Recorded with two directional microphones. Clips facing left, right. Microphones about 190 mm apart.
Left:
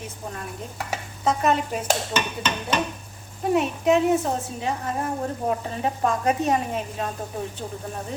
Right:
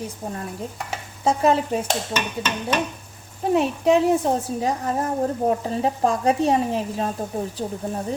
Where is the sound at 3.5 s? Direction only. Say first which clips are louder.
Right 2 dB; 35° right (ahead or behind).